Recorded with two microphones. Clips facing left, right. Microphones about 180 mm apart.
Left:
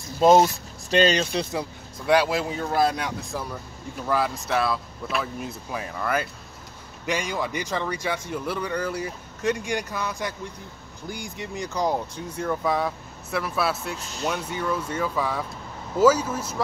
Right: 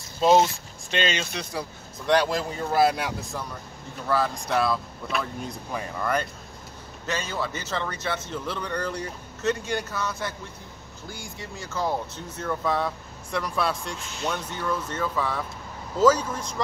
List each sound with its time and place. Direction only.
0.2 s speech: 45° left (ahead or behind)
2.0 s speech: 5° left (ahead or behind)
2.8 s speech: 5° right (ahead or behind)